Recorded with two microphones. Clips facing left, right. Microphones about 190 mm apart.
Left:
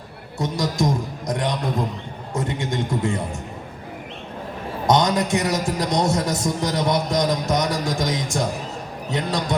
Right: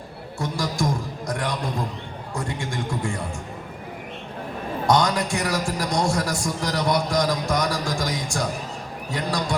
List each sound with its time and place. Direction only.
0.3 s a sound: 20° left (ahead or behind)
2.3 s music: 20° left (ahead or behind)
4.9 s a man's voice: 20° left (ahead or behind)